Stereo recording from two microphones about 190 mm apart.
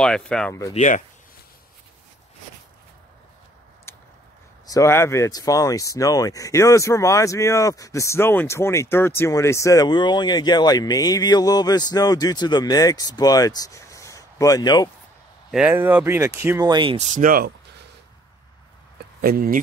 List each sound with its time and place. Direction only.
0.0 s speech: 5° left (ahead or behind)
0.7 s speech: 40° left (ahead or behind)
3.9 s a sound: 15° left (ahead or behind)
4.6 s speech: 15° left (ahead or behind)
15.5 s speech: 10° right (ahead or behind); by 17.6 s 50° right (ahead or behind)
19.2 s speech: 50° right (ahead or behind)